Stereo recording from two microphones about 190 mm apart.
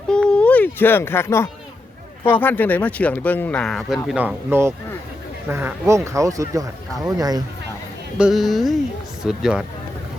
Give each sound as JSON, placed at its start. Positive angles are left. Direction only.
{"t": 0.1, "sound": "a sound", "side_deg": 5}
{"t": 2.2, "sound": "speech", "side_deg": 10}
{"t": 8.2, "sound": "speech", "side_deg": 0}